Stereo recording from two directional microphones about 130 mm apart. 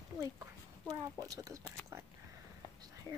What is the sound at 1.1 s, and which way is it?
Speech, 25° right (ahead or behind).